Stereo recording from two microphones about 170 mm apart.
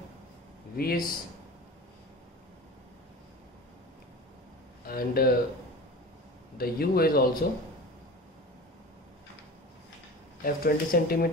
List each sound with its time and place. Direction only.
0.7 s speech: 60° left (ahead or behind)
4.8 s speech: 60° left (ahead or behind)
6.6 s speech: 60° left (ahead or behind)
10.4 s speech: 60° left (ahead or behind)